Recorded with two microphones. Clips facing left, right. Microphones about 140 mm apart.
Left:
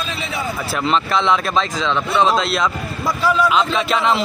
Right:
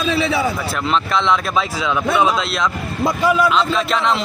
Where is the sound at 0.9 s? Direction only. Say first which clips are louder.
Left 1 dB; centre (ahead or behind).